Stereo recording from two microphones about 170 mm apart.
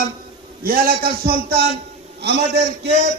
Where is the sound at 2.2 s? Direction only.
80° right.